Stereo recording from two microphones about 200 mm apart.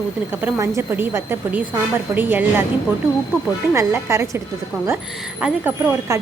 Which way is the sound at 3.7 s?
15° right (ahead or behind).